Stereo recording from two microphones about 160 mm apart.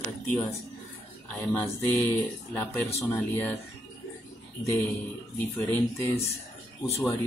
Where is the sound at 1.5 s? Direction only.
15° left (ahead or behind).